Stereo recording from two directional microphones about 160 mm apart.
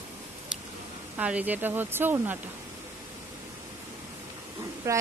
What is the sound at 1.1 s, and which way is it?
Speech, 10° right (ahead or behind).